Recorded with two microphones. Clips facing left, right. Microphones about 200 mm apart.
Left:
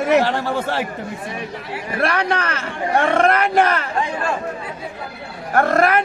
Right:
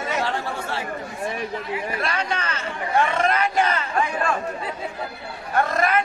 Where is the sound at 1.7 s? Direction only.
65° left (ahead or behind).